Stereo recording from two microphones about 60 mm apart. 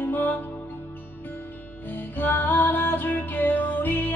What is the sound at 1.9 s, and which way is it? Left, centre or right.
Music, left.